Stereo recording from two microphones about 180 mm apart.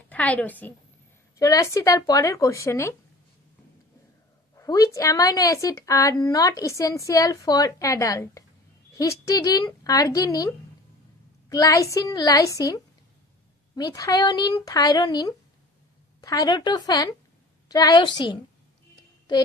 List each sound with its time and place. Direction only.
0.1 s a woman's voice: 10° left (ahead or behind)
4.6 s a woman's voice: 20° left (ahead or behind)